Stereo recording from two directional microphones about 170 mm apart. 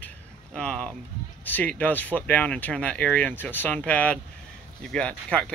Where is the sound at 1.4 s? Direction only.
10° left (ahead or behind).